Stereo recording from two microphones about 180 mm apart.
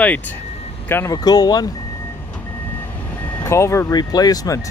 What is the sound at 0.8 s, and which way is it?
Speech, 15° left (ahead or behind).